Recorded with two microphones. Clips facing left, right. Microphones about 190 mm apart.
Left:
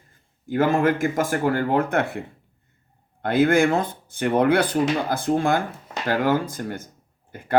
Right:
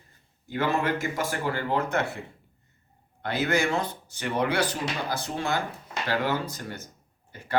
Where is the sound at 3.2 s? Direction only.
55° left (ahead or behind).